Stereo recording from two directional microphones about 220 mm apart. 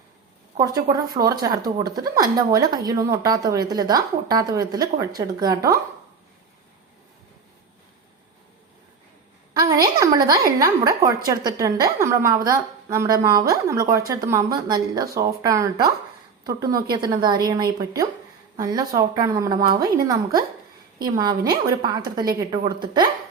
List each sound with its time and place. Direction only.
0.6 s a woman's voice: 15° right (ahead or behind)
10.0 s a woman's voice: 15° right (ahead or behind)
21.0 s a woman's voice: 20° right (ahead or behind)